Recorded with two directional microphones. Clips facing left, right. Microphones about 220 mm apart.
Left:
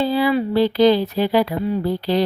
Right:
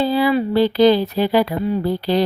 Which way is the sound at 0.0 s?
40° right (ahead or behind).